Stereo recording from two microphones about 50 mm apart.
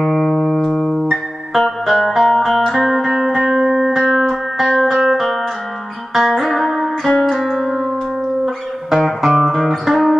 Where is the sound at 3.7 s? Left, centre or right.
Centre.